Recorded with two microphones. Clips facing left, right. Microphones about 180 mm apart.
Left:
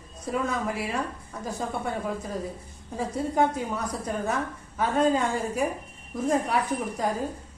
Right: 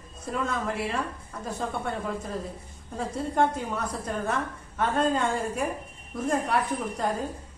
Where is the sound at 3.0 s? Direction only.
5° left (ahead or behind).